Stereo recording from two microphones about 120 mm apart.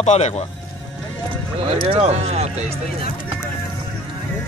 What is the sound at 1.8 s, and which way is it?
Speech, 55° right (ahead or behind).